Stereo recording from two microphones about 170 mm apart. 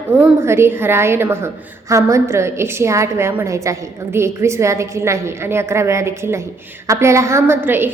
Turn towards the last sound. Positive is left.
turn(degrees=-10)  # may be behind; listen again after turning